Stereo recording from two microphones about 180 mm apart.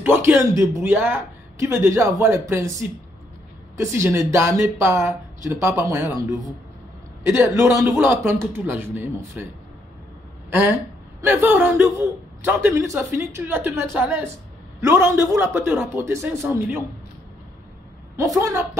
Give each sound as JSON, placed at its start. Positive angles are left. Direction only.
{"t": 0.0, "sound": "speech", "side_deg": -10}
{"t": 3.7, "sound": "speech", "side_deg": -15}
{"t": 7.2, "sound": "speech", "side_deg": -20}
{"t": 11.1, "sound": "speech", "side_deg": -10}
{"t": 18.1, "sound": "a woman's voice", "side_deg": -20}